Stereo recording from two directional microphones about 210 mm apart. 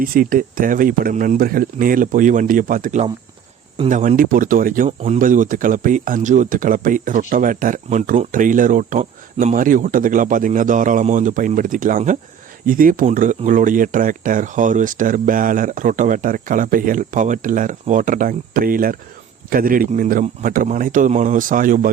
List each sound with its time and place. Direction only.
0.0 s speech: 40° right (ahead or behind)